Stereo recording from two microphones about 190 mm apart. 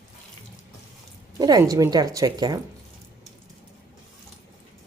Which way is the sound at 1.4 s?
20° right (ahead or behind).